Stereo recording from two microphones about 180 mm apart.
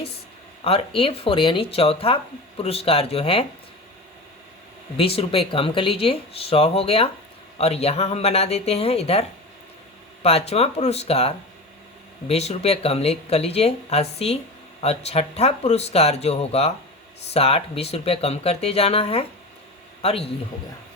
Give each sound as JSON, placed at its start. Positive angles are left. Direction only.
{"t": 0.6, "sound": "speech", "side_deg": 30}
{"t": 4.9, "sound": "speech", "side_deg": 30}
{"t": 10.2, "sound": "speech", "side_deg": 35}